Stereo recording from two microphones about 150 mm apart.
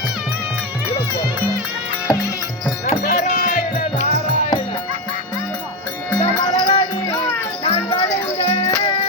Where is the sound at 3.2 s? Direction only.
55° left (ahead or behind).